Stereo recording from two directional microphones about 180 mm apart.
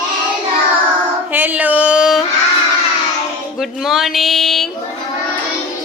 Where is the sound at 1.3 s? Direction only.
10° right (ahead or behind).